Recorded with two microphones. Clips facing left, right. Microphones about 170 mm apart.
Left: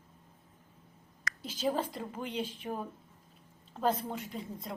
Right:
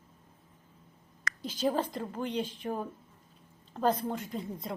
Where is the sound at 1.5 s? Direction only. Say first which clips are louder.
Right 2 dB; centre (ahead or behind).